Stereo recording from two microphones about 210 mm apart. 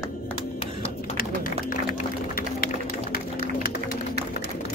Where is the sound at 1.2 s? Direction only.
45° left (ahead or behind).